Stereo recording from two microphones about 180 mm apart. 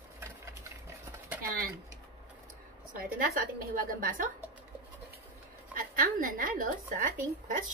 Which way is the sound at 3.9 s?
50° right (ahead or behind).